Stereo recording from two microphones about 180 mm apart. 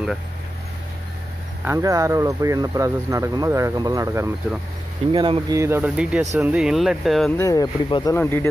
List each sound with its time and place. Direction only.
1.6 s speech: 15° right (ahead or behind)
5.1 s speech: 25° right (ahead or behind)
5.6 s speech: 10° right (ahead or behind)
7.3 s speech: 20° left (ahead or behind)